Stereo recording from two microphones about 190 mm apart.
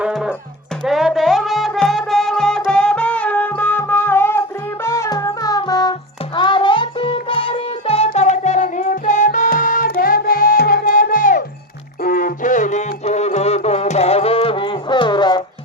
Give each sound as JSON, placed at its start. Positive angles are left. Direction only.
{"t": 0.0, "sound": "music", "side_deg": -5}